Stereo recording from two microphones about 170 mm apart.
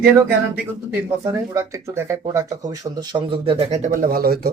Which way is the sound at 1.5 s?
15° right (ahead or behind).